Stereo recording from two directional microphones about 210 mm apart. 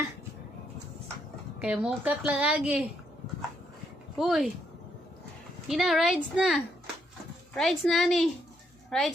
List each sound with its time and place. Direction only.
1.5 s a woman's voice: 5° right (ahead or behind)
4.2 s a woman's voice: centre (ahead or behind)
5.6 s a woman's voice: centre (ahead or behind)